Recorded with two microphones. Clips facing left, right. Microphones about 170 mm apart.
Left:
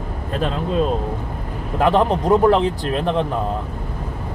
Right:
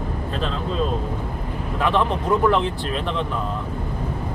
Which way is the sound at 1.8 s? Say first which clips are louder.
Left 5 dB; 40° left (ahead or behind).